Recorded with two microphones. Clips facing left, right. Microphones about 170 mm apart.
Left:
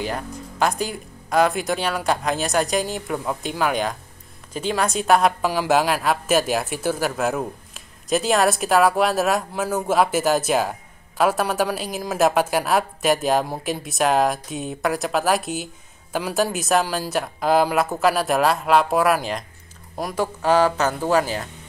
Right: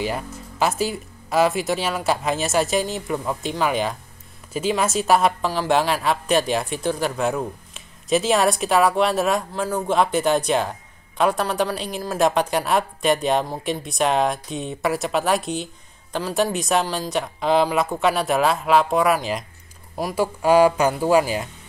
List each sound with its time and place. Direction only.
0.0 s a woman's voice: 5° right (ahead or behind)